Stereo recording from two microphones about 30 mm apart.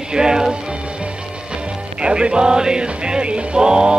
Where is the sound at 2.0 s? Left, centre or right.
Right.